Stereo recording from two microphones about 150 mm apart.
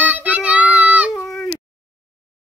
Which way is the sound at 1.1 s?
10° left (ahead or behind).